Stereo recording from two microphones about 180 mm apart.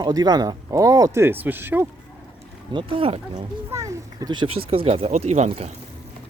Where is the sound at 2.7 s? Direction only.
30° right (ahead or behind).